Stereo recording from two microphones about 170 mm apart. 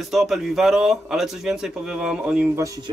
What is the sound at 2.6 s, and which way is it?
Speech, 20° right (ahead or behind).